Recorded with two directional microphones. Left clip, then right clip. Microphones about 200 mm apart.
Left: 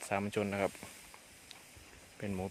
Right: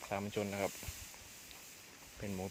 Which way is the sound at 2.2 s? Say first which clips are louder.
Left 3 dB; 20° left (ahead or behind).